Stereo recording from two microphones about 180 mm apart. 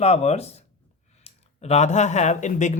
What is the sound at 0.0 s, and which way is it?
Speech, 35° left (ahead or behind).